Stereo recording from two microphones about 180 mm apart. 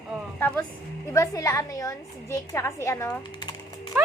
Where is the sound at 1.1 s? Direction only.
15° left (ahead or behind).